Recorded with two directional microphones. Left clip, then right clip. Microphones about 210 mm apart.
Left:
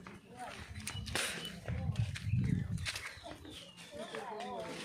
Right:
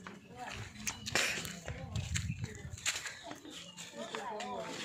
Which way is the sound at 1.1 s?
5° right (ahead or behind).